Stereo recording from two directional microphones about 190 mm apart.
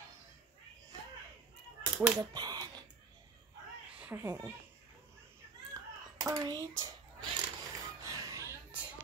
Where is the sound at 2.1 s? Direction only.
20° right (ahead or behind).